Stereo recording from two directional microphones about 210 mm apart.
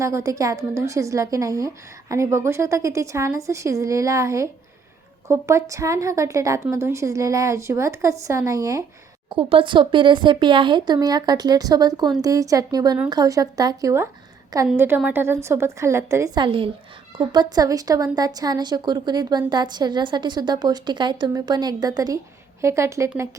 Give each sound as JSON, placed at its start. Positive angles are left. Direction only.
{"t": 0.0, "sound": "a woman's voice", "side_deg": -15}